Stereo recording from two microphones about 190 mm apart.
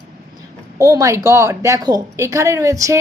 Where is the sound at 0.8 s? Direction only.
15° right (ahead or behind).